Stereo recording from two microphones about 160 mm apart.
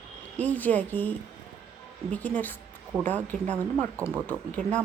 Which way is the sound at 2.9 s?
20° right (ahead or behind).